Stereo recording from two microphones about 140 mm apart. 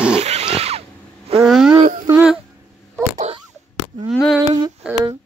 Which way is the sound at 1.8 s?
70° right (ahead or behind).